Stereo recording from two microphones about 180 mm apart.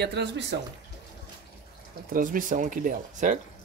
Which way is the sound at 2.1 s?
50° right (ahead or behind).